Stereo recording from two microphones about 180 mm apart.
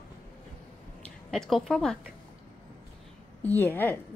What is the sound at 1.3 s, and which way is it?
Speech, centre (ahead or behind).